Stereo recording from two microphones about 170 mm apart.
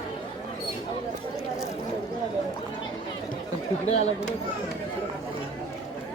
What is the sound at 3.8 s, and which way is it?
Speech, 40° left (ahead or behind).